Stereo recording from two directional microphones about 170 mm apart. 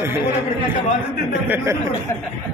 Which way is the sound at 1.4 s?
10° right (ahead or behind).